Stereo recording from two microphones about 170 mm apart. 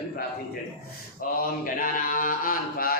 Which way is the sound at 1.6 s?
55° left (ahead or behind).